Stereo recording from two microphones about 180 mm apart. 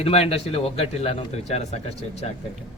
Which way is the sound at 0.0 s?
35° left (ahead or behind).